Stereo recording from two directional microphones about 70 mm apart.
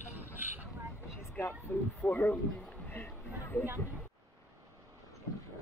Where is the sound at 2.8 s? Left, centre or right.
Left.